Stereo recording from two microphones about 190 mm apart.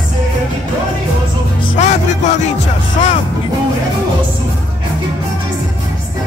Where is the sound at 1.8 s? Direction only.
40° left (ahead or behind).